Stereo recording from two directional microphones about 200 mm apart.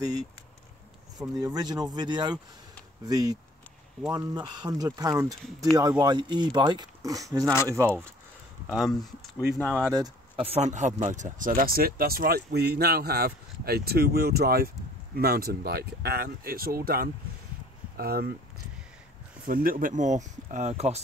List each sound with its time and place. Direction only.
1.2 s speech: 20° right (ahead or behind)
5.4 s speech: centre (ahead or behind)
5.8 s speech: 20° right (ahead or behind)
8.6 s speech: centre (ahead or behind)
9.8 s speech: 20° right (ahead or behind); by 18.3 s 50° right (ahead or behind)
19.4 s speech: 45° right (ahead or behind)